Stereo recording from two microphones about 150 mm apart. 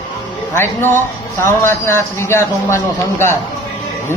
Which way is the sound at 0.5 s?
15° left (ahead or behind).